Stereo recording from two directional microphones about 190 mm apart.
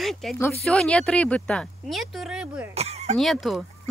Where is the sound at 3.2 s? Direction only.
Centre (ahead or behind).